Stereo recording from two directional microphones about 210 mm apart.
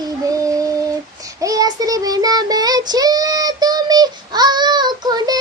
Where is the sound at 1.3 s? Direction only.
15° right (ahead or behind).